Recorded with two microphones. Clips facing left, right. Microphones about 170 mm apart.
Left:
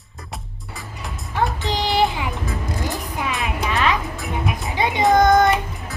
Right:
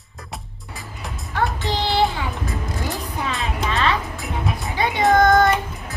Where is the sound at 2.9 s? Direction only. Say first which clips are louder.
Left 1 dB; 20° left (ahead or behind).